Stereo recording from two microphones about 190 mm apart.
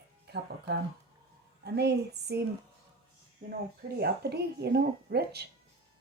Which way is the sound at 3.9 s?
55° right (ahead or behind).